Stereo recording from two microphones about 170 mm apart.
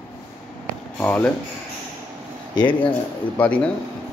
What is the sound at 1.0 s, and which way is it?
Speech, 10° left (ahead or behind).